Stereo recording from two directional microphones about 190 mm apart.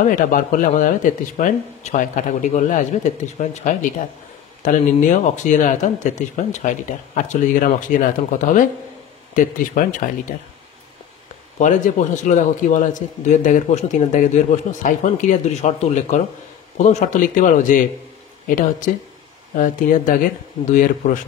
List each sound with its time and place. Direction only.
0.0 s a man's voice: 45° left (ahead or behind)
11.5 s a man's voice: 40° left (ahead or behind)
19.5 s speech: 45° left (ahead or behind)